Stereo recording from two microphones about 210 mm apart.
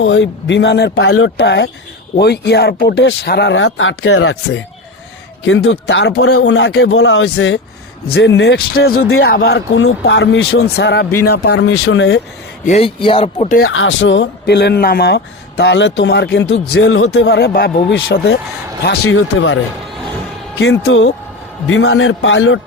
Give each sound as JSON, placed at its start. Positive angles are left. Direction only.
{"t": 0.0, "sound": "speech", "side_deg": 65}
{"t": 1.0, "sound": "speech", "side_deg": 80}
{"t": 5.4, "sound": "speech", "side_deg": 60}
{"t": 6.4, "sound": "speech", "side_deg": 60}
{"t": 8.0, "sound": "speech", "side_deg": 50}
{"t": 8.4, "sound": "speech", "side_deg": 65}
{"t": 9.0, "sound": "speech", "side_deg": 80}
{"t": 9.5, "sound": "speech", "side_deg": 65}
{"t": 12.6, "sound": "speech", "side_deg": 30}
{"t": 13.7, "sound": "speech", "side_deg": 65}
{"t": 16.8, "sound": "speech", "side_deg": 80}
{"t": 17.2, "sound": "speech", "side_deg": 55}
{"t": 18.9, "sound": "speech", "side_deg": 80}
{"t": 20.6, "sound": "speech", "side_deg": 65}